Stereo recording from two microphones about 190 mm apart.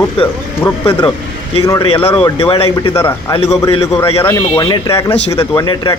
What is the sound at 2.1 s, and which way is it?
Speech, 15° left (ahead or behind).